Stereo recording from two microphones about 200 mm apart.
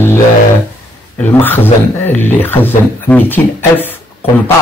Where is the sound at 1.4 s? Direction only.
10° left (ahead or behind).